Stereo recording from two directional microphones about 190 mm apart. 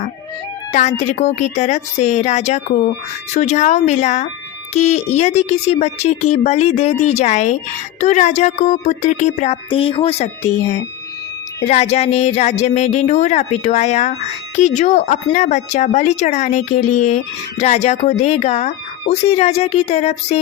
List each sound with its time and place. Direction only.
0.7 s speech: 35° left (ahead or behind)